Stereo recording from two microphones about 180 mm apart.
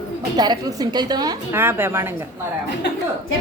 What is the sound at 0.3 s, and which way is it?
Speech, 25° right (ahead or behind).